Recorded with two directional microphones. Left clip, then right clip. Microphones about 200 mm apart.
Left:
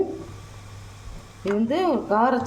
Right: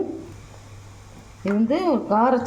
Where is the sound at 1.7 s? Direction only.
10° right (ahead or behind).